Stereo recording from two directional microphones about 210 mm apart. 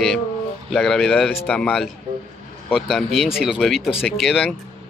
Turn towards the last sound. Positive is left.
turn(degrees=5)  # may be behind; listen again after turning